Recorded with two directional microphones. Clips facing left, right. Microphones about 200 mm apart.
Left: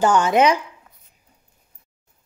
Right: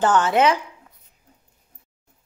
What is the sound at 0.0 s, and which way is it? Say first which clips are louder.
Speech: left 2 dB; 15° left (ahead or behind).